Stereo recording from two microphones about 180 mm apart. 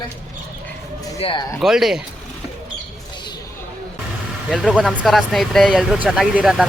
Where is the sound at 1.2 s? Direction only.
30° left (ahead or behind).